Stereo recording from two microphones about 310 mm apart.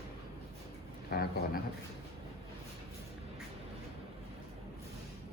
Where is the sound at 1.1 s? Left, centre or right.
Left.